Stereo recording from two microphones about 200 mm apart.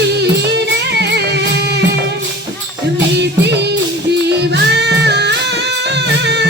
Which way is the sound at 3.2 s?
60° right (ahead or behind).